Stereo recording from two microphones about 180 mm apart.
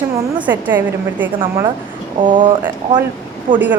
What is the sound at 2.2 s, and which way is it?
Speech, 25° right (ahead or behind).